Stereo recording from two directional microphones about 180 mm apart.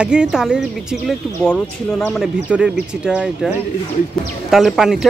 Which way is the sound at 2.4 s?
5° right (ahead or behind).